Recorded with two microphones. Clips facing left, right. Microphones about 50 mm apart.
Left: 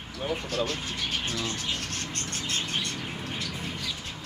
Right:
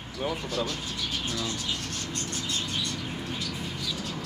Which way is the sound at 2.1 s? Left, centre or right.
Left.